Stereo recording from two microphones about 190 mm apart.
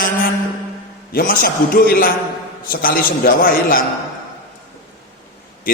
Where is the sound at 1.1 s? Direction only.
45° left (ahead or behind).